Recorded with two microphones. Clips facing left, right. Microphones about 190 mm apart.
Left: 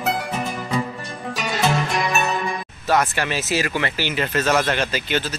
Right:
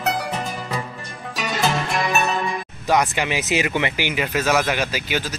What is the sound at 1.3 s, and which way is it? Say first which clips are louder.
Music: even; centre (ahead or behind).